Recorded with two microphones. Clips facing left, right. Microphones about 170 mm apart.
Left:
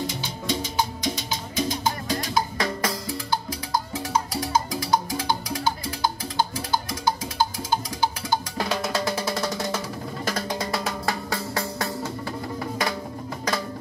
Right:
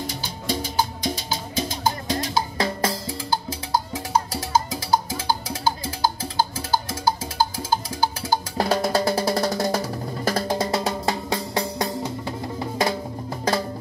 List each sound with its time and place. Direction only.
0.0 s music: 35° right (ahead or behind)